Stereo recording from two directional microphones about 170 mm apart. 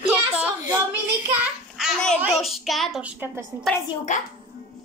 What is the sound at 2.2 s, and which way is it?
Child singing, centre (ahead or behind).